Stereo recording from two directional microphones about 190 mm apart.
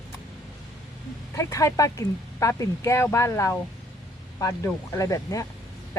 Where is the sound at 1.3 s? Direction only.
15° left (ahead or behind).